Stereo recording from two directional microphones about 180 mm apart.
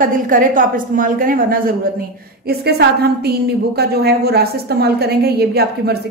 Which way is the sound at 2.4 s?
65° right (ahead or behind).